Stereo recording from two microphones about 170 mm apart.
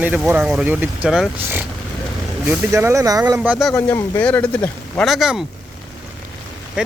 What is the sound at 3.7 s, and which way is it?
Speech, 10° left (ahead or behind).